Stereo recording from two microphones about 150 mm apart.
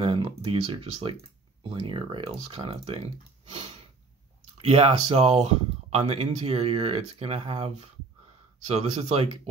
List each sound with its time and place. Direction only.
0.0 s speech: 35° right (ahead or behind)
4.6 s speech: 40° right (ahead or behind)